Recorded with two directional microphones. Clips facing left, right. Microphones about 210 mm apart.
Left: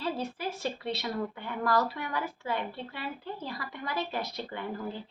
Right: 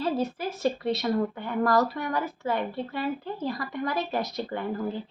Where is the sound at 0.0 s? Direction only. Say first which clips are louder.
Right 6 dB; 45° right (ahead or behind).